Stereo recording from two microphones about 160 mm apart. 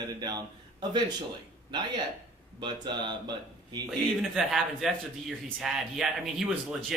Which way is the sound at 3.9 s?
Centre (ahead or behind).